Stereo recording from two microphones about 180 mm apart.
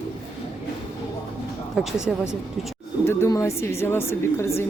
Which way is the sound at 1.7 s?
5° right (ahead or behind).